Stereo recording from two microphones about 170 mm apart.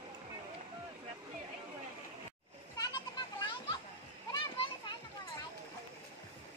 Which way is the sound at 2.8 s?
25° left (ahead or behind).